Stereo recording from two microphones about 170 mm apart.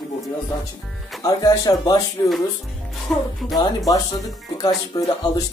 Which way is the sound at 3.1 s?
5° left (ahead or behind).